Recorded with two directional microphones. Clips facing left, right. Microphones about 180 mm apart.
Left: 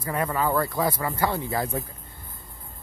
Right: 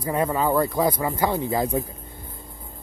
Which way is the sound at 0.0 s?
20° right (ahead or behind).